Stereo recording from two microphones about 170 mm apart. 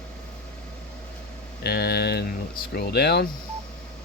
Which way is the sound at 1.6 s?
70° left (ahead or behind).